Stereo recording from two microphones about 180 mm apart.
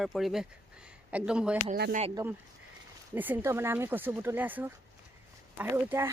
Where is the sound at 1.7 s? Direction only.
50° right (ahead or behind).